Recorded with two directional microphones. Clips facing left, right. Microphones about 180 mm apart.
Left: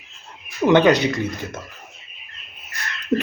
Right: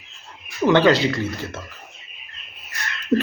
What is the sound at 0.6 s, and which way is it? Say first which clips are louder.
Speech: left 1 dB; 20° left (ahead or behind).